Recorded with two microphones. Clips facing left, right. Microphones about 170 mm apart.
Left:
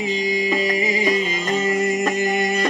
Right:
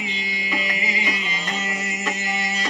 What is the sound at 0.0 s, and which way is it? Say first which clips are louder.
Music: left 11 dB; 40° left (ahead or behind).